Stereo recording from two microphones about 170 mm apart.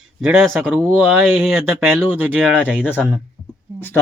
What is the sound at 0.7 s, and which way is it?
Speech, 10° right (ahead or behind).